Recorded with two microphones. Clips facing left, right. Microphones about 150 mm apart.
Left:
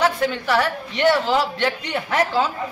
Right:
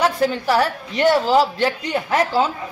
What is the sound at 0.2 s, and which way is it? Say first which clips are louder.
A woman's voice: right 2 dB; 35° right (ahead or behind).